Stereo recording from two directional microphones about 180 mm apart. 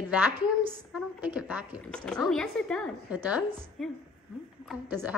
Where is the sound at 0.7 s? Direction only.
10° right (ahead or behind).